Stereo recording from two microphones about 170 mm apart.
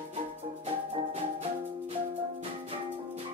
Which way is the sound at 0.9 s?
35° right (ahead or behind).